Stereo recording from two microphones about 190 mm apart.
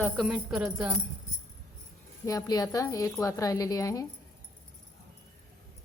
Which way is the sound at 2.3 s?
20° left (ahead or behind).